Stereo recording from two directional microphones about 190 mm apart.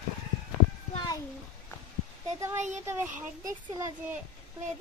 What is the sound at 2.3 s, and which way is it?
Speech, 15° right (ahead or behind).